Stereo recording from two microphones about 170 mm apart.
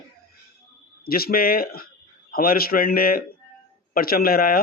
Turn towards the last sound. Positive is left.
turn(degrees=60)  # may be behind; listen again after turning